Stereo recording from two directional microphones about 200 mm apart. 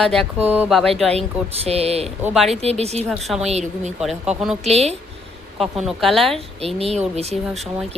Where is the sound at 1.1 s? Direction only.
30° right (ahead or behind).